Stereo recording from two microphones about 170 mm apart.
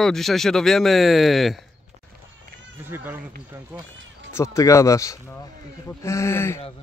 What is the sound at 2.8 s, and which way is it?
Speech, 15° right (ahead or behind).